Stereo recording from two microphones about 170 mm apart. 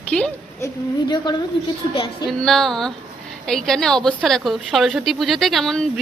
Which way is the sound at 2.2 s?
Centre (ahead or behind).